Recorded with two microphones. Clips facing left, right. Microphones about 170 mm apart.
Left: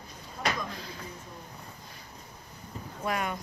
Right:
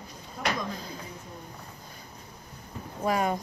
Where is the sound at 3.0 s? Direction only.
35° right (ahead or behind).